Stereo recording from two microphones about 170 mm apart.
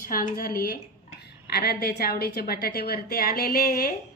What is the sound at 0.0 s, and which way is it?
A woman's voice, 55° left (ahead or behind).